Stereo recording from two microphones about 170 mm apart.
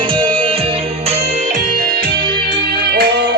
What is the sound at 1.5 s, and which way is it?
Music, 55° right (ahead or behind).